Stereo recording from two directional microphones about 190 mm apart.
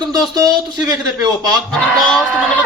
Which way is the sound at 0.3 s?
20° right (ahead or behind).